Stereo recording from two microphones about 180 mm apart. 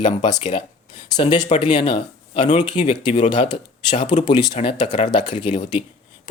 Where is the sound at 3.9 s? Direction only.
40° left (ahead or behind).